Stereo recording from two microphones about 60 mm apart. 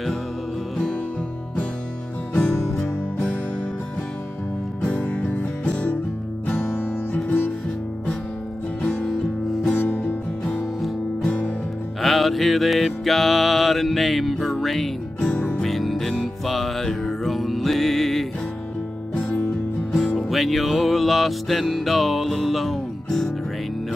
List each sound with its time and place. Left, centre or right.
2.3 s music: centre
5.0 s music: left
9.8 s music: left
11.2 s music: left
12.0 s music: centre
15.1 s music: centre
15.6 s music: centre
19.1 s music: centre
20.2 s music: centre